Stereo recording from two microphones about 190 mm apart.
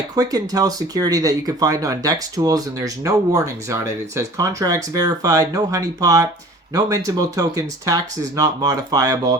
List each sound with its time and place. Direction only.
0.2 s speech: 20° right (ahead or behind)